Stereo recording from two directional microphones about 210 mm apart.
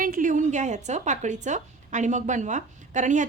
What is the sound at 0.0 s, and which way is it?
Speech, 40° right (ahead or behind).